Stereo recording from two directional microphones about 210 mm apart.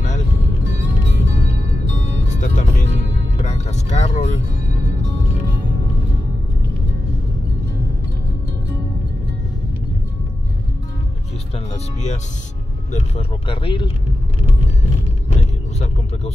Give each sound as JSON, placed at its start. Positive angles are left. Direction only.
{"t": 2.2, "sound": "music", "side_deg": 35}
{"t": 11.5, "sound": "music", "side_deg": 30}
{"t": 12.9, "sound": "speech", "side_deg": 30}